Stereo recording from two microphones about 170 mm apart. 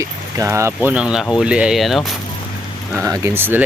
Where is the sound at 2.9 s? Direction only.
20° right (ahead or behind).